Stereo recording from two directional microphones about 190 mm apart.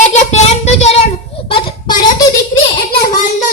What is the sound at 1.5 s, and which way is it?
Child singing, 25° left (ahead or behind).